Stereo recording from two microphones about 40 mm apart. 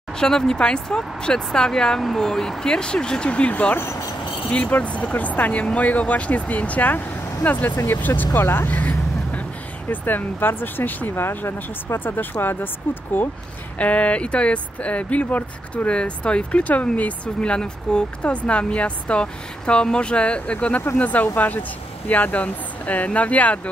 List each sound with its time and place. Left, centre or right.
0.2 s speech: centre; by 8.5 s left
8.6 s vehicle: left
9.8 s speech: left
11.1 s speech: left
11.9 s speech: left
13.7 s speech: left
15.9 s speech: left
21.0 s speech: left